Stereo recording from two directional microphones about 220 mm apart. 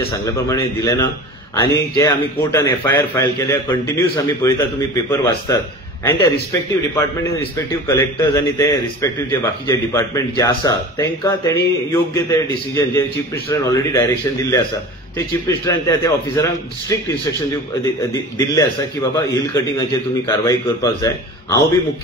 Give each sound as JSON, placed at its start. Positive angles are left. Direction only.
{"t": 0.5, "sound": "a man's voice", "side_deg": 15}
{"t": 19.1, "sound": "a man's voice", "side_deg": 15}